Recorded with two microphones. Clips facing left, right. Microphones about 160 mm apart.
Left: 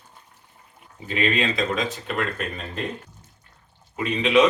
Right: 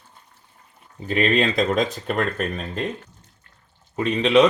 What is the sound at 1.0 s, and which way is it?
Speech, 40° right (ahead or behind).